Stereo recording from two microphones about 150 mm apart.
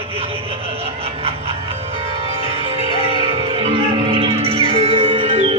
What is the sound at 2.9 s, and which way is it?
Music, 35° right (ahead or behind).